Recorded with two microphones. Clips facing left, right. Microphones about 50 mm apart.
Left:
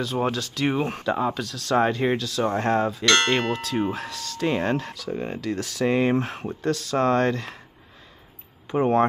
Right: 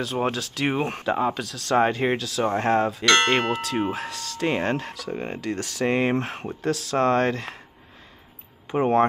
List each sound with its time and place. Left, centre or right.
0.0 s speech: centre
3.1 s speech: centre
8.6 s speech: centre